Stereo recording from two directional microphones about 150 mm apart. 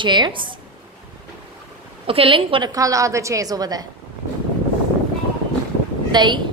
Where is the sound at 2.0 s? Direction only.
35° right (ahead or behind).